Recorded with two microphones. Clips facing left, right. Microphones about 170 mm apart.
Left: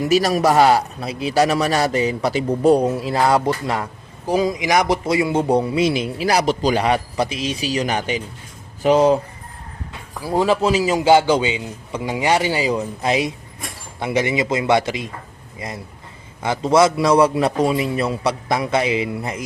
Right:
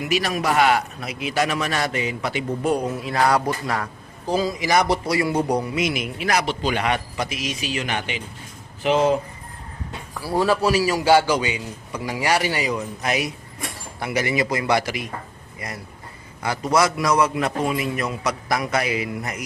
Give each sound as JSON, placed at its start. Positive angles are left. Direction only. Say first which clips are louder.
{"t": 0.0, "sound": "a man's voice", "louder": "left 7 dB", "side_deg": 40}
{"t": 10.2, "sound": "a man's voice", "louder": "left 3 dB", "side_deg": 20}